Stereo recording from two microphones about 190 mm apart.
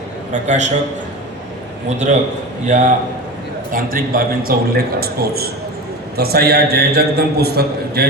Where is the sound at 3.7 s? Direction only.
50° right (ahead or behind).